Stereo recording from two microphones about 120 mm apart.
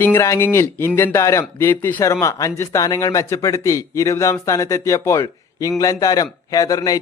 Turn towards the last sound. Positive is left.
turn(degrees=30)  # may be behind; listen again after turning